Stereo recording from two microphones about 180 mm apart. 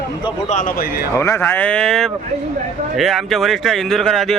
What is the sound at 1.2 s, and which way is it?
Speech, 15° left (ahead or behind).